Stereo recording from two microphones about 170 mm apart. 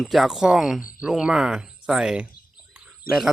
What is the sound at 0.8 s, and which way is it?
Speech, 50° left (ahead or behind).